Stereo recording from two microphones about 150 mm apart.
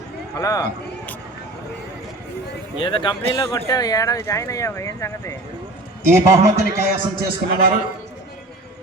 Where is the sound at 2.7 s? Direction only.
35° left (ahead or behind).